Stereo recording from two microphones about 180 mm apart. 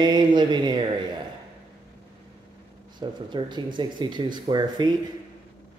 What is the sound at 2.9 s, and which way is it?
Speech, 25° right (ahead or behind).